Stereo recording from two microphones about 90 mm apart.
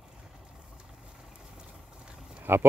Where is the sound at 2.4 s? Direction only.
25° right (ahead or behind).